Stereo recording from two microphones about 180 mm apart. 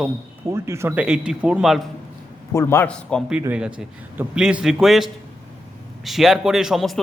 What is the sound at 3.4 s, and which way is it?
A man's voice, 5° right (ahead or behind).